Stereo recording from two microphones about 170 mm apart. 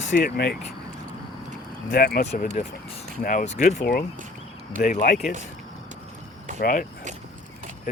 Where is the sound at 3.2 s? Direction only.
50° left (ahead or behind).